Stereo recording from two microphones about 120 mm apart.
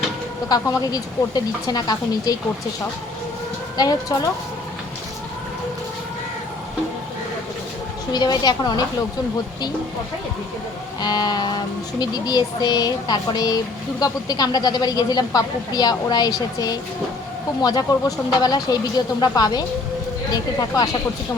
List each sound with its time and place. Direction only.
0.4 s a woman's voice: 30° left (ahead or behind)
3.8 s a woman's voice: 35° left (ahead or behind)
8.1 s a woman's voice: 35° left (ahead or behind)
11.0 s a woman's voice: 35° left (ahead or behind)